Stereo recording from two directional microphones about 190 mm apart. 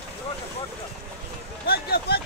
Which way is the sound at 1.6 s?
55° left (ahead or behind).